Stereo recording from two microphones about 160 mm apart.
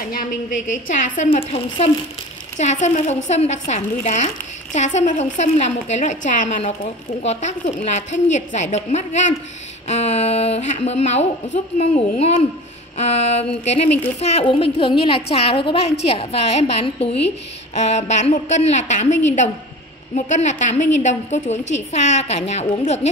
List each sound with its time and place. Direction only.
0.8 s a woman's voice: 50° left (ahead or behind)
1.3 s a woman's voice: 35° left (ahead or behind)